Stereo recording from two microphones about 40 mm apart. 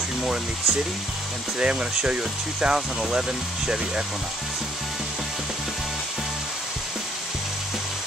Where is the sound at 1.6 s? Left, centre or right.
Right.